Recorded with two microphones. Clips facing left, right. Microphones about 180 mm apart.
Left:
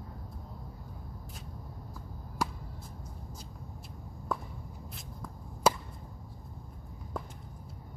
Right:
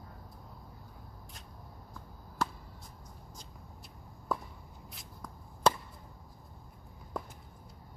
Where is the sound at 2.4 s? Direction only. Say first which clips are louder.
Left 1 dB; 10° left (ahead or behind).